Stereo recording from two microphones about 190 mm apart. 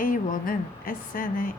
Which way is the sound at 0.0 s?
45° left (ahead or behind).